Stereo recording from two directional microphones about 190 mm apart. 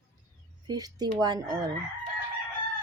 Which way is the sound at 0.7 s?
20° right (ahead or behind).